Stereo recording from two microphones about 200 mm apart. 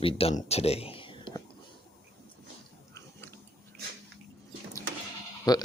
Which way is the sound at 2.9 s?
10° left (ahead or behind).